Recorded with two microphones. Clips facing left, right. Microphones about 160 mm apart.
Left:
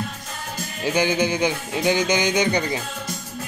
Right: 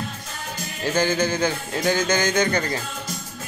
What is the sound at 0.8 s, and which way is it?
Speech, 15° left (ahead or behind).